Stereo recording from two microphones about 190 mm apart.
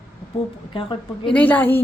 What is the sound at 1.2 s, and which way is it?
Speech, 10° left (ahead or behind).